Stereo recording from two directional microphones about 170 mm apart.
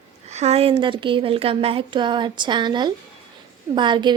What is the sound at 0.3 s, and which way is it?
A woman's voice, 40° right (ahead or behind).